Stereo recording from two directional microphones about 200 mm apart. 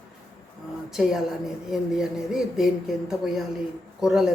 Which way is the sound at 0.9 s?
Centre (ahead or behind).